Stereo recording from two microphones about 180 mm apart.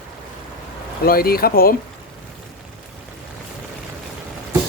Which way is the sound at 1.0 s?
55° left (ahead or behind).